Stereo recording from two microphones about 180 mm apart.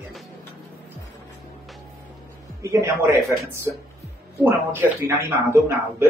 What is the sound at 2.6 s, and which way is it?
Speech, 15° right (ahead or behind).